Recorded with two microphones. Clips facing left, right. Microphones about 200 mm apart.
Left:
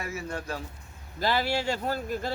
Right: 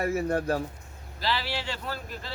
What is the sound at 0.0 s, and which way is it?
Speech, 55° right (ahead or behind).